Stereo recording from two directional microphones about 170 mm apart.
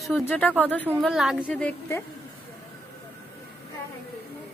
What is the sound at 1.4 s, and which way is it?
Speech, 10° left (ahead or behind).